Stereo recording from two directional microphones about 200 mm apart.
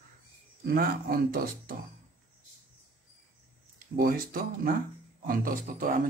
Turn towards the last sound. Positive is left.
turn(degrees=-45)  # may be behind; listen again after turning